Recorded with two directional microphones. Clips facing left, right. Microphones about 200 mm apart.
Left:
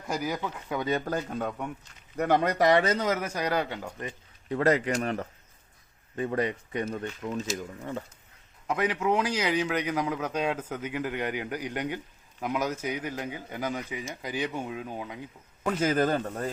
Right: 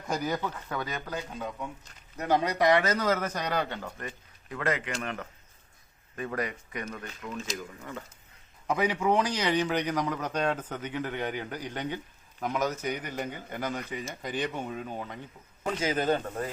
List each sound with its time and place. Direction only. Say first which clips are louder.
0.1 s a man's voice: even; 5° left (ahead or behind)
1.0 s a man's voice: left 5 dB; 55° left (ahead or behind); by 3.1 s 30° left (ahead or behind)
3.1 s a man's voice: left 1 dB; 10° left (ahead or behind)
4.4 s speech: left 7 dB; 35° left (ahead or behind)
8.6 s a man's voice: even; centre (ahead or behind)
15.8 s speech: left 2 dB; 50° left (ahead or behind)